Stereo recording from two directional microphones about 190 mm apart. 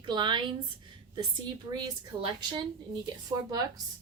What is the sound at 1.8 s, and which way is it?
Speech, 20° right (ahead or behind).